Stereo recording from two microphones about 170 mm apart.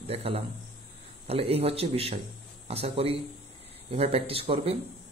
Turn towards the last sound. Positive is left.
turn(degrees=-35)  # may be behind; listen again after turning